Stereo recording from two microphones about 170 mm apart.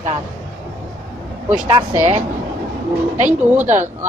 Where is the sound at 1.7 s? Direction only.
30° right (ahead or behind).